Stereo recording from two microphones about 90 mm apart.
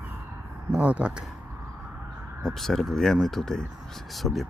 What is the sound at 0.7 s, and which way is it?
Speech, 15° right (ahead or behind).